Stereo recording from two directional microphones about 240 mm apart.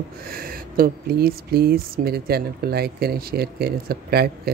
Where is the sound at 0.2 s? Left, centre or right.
Right.